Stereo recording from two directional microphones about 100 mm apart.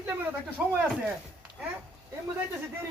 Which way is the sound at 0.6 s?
15° right (ahead or behind).